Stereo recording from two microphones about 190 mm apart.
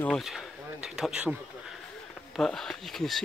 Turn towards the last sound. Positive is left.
turn(degrees=0)  # may be behind; listen again after turning